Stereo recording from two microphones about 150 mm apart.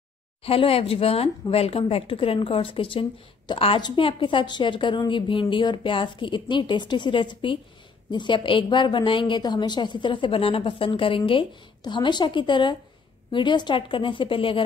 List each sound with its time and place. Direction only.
0.4 s speech: 40° left (ahead or behind)